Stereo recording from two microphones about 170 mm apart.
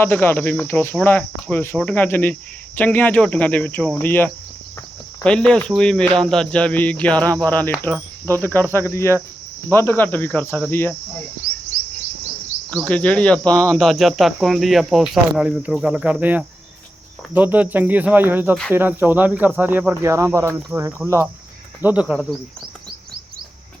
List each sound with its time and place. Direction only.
0.0 s speech: 15° left (ahead or behind)
7.9 s speech: 15° right (ahead or behind)
8.9 s speech: 15° left (ahead or behind)
12.7 s speech: 10° left (ahead or behind)